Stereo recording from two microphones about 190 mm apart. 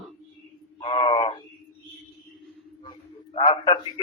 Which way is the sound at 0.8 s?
30° left (ahead or behind).